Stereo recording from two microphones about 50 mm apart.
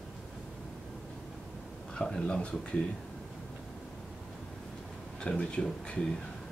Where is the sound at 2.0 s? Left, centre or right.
Centre.